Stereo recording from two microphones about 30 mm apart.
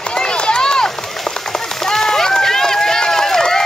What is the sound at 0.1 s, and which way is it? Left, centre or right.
Run, left.